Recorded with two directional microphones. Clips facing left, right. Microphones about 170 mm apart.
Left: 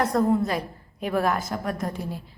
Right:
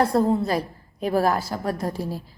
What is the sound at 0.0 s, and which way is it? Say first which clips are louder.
A woman's voice: right 2 dB; 30° right (ahead or behind).